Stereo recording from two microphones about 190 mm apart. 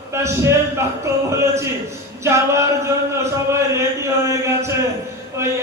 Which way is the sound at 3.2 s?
15° right (ahead or behind).